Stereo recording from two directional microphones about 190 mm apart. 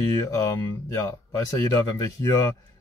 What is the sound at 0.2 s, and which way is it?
Speech, 15° left (ahead or behind).